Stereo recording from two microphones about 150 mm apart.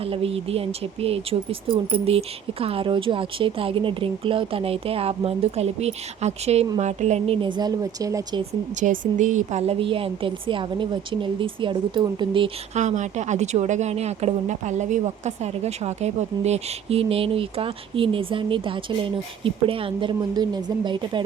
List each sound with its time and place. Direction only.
0.0 s speech: 40° right (ahead or behind)
7.4 s speech: 30° right (ahead or behind)
8.8 s speech: 55° right (ahead or behind); by 12.5 s 35° right (ahead or behind)
12.7 s speech: 50° right (ahead or behind); by 21.2 s 30° right (ahead or behind)